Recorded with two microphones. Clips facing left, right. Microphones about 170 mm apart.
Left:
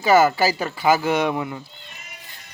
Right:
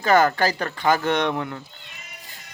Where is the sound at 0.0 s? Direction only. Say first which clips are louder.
Left 2 dB; 5° left (ahead or behind).